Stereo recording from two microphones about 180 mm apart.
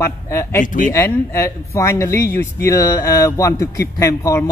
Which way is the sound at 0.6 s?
45° left (ahead or behind).